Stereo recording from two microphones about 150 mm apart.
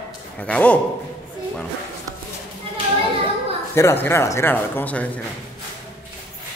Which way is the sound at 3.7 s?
15° left (ahead or behind).